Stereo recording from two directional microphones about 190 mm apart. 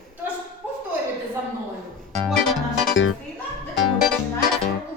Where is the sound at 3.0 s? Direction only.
85° left.